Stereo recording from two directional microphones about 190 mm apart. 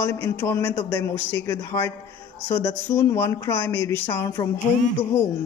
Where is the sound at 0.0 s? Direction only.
15° left (ahead or behind).